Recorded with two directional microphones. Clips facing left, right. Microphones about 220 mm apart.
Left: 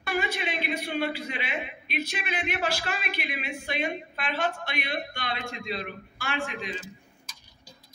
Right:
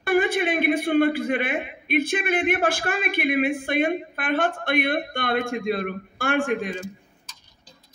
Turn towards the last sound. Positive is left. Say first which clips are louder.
# even
turn(degrees=10)  # may be behind; listen again after turning